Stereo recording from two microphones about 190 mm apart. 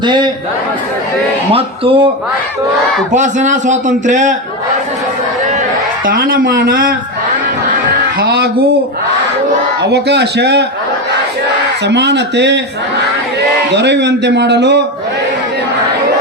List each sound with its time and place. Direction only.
0.0 s a man's voice: 25° right (ahead or behind)
1.5 s speech: 30° right (ahead or behind)
3.1 s a man's voice: 40° right (ahead or behind)
6.1 s speech: 50° right (ahead or behind)
8.2 s a man's voice: 55° right (ahead or behind)
9.8 s a man's voice: 60° right (ahead or behind)
11.9 s a man's voice: 65° right (ahead or behind)
13.7 s a man's voice: 65° right (ahead or behind)